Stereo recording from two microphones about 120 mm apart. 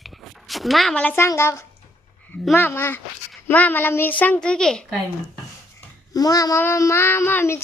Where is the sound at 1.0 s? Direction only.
15° left (ahead or behind).